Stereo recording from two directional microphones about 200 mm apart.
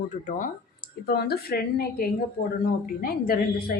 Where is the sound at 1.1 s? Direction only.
50° left (ahead or behind).